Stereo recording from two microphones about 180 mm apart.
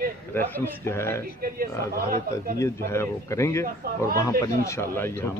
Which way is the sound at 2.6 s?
15° left (ahead or behind).